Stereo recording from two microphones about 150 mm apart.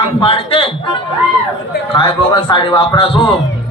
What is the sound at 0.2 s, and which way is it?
Speech, 35° left (ahead or behind).